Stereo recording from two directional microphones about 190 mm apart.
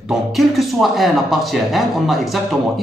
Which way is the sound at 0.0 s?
Centre (ahead or behind).